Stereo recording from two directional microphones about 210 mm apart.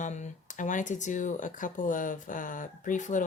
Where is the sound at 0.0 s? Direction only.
35° left (ahead or behind).